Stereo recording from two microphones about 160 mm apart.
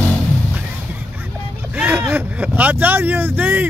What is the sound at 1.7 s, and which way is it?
Vehicle, 10° right (ahead or behind).